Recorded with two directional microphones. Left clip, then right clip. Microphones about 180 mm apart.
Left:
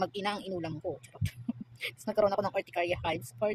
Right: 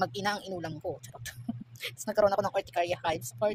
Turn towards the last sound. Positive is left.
turn(degrees=15)  # may be behind; listen again after turning